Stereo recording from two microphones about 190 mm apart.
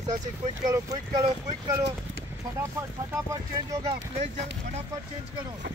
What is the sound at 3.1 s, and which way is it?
Speech, 15° right (ahead or behind).